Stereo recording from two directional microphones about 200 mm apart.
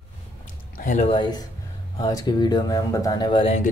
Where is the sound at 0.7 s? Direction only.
40° left (ahead or behind).